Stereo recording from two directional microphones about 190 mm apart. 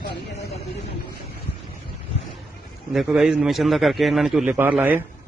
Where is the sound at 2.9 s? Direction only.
5° right (ahead or behind).